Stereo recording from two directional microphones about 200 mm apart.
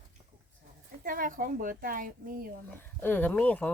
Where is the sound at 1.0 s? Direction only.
45° right (ahead or behind).